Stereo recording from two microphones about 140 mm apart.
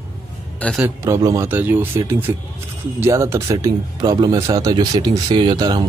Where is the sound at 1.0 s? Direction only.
20° right (ahead or behind).